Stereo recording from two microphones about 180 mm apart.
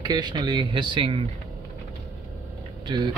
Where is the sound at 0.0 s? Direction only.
25° right (ahead or behind).